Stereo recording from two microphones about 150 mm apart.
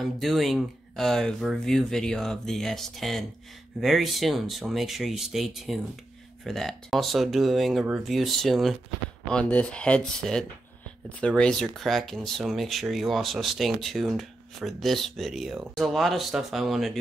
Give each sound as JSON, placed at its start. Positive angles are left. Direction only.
{"t": 0.0, "sound": "speech", "side_deg": 0}